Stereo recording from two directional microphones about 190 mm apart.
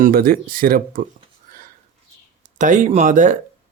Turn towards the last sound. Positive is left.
turn(degrees=-40)  # may be behind; listen again after turning